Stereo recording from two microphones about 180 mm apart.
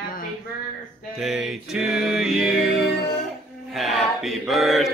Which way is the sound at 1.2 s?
Centre (ahead or behind).